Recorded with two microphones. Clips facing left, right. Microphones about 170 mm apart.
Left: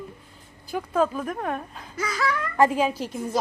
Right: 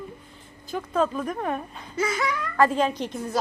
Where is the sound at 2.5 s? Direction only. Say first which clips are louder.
Even; 15° left (ahead or behind).